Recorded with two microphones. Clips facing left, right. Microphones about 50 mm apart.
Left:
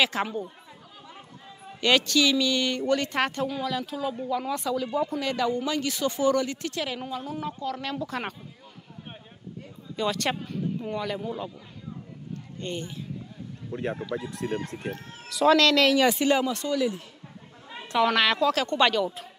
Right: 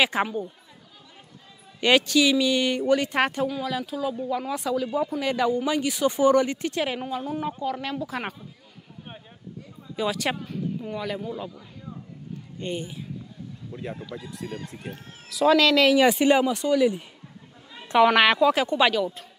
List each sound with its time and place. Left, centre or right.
0.0 s speech: centre
1.8 s speech: centre
9.9 s a man's voice: centre
12.5 s speech: centre
14.1 s speech: left
15.2 s speech: centre